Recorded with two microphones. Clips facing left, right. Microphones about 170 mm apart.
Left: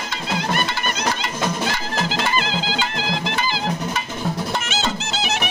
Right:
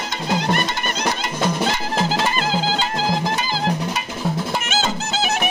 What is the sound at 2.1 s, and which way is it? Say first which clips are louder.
Music: right 2 dB; 45° right (ahead or behind).